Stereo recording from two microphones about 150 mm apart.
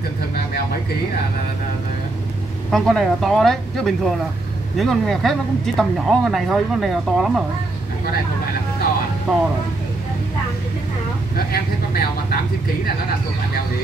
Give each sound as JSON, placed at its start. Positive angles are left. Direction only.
{"t": 2.7, "sound": "speech", "side_deg": 5}
{"t": 9.3, "sound": "speech", "side_deg": 0}
{"t": 11.3, "sound": "speech", "side_deg": 90}